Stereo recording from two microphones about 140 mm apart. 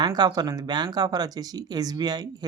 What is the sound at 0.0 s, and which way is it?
Speech, 30° right (ahead or behind).